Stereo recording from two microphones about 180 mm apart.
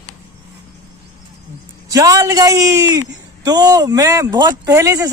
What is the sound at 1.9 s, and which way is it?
A man's voice, 20° right (ahead or behind).